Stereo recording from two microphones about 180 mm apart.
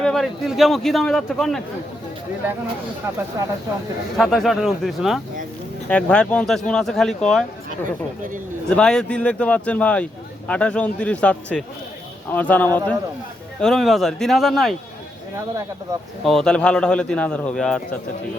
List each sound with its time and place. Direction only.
0.0 s a man's voice: centre (ahead or behind)
3.4 s speech: 20° right (ahead or behind)
4.2 s a man's voice: centre (ahead or behind)
8.7 s a man's voice: 5° left (ahead or behind)
16.2 s a man's voice: centre (ahead or behind)